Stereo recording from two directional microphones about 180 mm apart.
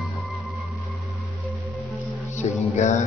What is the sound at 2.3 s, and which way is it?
Speech, 40° left (ahead or behind).